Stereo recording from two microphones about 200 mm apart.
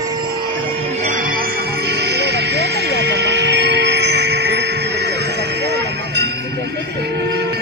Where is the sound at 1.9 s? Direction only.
55° right (ahead or behind).